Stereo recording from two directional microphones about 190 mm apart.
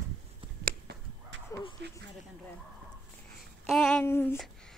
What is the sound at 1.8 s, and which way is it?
Speech, 65° right (ahead or behind).